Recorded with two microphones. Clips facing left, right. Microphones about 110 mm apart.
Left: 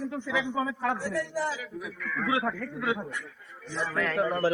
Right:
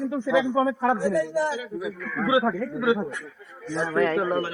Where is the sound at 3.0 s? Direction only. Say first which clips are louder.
Right 6 dB; 30° right (ahead or behind).